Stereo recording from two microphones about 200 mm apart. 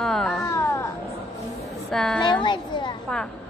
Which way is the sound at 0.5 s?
15° left (ahead or behind).